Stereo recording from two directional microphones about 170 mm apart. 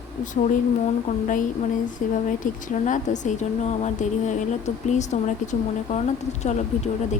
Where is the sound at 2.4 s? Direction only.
50° left (ahead or behind).